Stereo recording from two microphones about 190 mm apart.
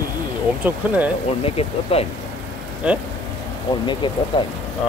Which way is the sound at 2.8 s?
5° right (ahead or behind).